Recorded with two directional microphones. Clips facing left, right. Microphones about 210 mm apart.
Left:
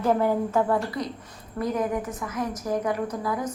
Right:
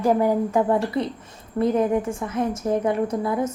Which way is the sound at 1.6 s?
30° right (ahead or behind).